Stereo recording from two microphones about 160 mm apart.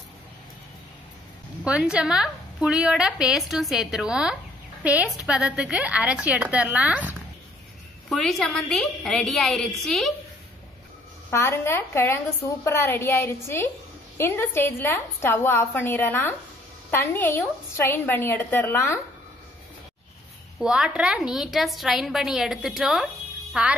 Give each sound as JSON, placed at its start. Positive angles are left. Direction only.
{"t": 1.6, "sound": "a woman's voice", "side_deg": -5}
{"t": 8.1, "sound": "a woman's voice", "side_deg": 0}
{"t": 11.2, "sound": "a woman's voice", "side_deg": 15}
{"t": 20.5, "sound": "a woman's voice", "side_deg": -5}